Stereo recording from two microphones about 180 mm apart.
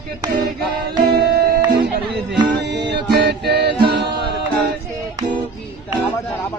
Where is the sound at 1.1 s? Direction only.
60° right (ahead or behind).